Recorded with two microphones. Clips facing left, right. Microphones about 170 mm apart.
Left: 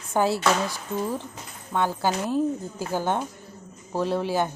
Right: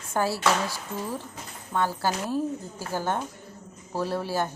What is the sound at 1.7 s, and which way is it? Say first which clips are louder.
A woman's voice: left 2 dB; 15° left (ahead or behind).